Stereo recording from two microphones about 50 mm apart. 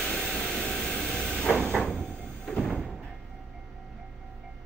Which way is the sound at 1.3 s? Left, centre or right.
Left.